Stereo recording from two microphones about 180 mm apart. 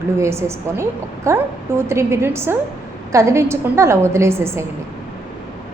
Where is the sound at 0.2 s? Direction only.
15° right (ahead or behind).